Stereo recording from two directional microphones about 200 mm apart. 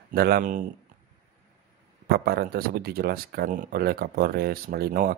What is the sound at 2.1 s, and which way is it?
Speech, 50° right (ahead or behind).